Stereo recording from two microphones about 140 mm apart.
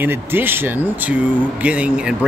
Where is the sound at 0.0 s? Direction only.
15° right (ahead or behind).